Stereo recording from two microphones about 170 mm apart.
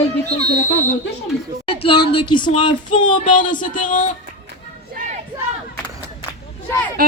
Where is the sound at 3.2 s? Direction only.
50° left (ahead or behind).